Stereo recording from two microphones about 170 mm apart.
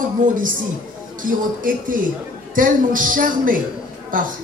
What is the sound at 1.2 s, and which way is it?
A woman's voice, 55° right (ahead or behind).